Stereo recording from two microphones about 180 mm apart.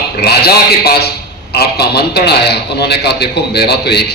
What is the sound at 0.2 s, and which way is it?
A man's voice, 60° left (ahead or behind).